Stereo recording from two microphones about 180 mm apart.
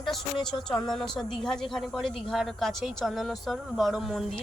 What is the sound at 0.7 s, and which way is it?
A woman's voice, centre (ahead or behind).